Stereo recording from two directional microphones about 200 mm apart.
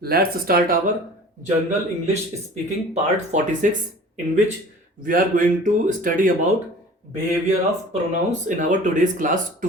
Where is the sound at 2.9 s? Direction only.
35° right (ahead or behind).